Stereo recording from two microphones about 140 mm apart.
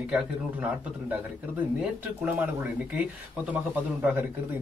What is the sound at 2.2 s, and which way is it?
Speech, 10° right (ahead or behind).